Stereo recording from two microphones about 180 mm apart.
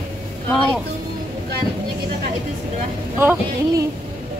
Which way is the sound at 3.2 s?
10° right (ahead or behind).